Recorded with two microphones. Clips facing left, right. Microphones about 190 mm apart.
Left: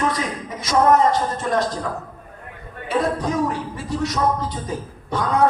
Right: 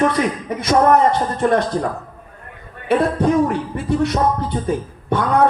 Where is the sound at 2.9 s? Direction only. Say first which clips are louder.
Right 6 dB; 60° right (ahead or behind).